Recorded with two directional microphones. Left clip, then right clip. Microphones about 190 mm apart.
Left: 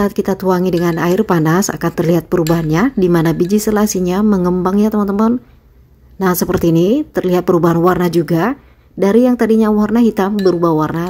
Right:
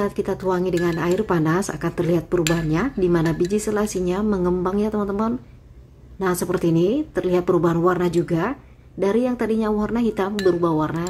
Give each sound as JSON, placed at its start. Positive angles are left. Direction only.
{"t": 0.0, "sound": "speech", "side_deg": 40}